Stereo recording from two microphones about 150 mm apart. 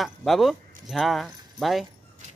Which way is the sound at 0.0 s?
Centre (ahead or behind).